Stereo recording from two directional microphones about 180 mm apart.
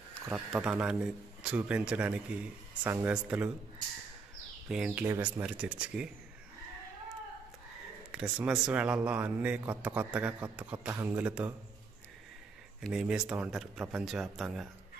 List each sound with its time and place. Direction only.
0.5 s a man's voice: 5° right (ahead or behind)
4.6 s a man's voice: 5° right (ahead or behind)
8.1 s a man's voice: 5° right (ahead or behind)
12.8 s speech: 5° right (ahead or behind)